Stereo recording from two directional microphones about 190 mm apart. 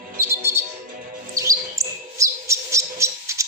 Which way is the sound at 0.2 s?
15° right (ahead or behind).